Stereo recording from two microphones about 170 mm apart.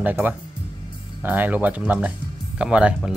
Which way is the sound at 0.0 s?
10° right (ahead or behind).